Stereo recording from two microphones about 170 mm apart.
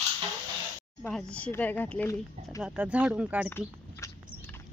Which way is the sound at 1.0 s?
5° left (ahead or behind).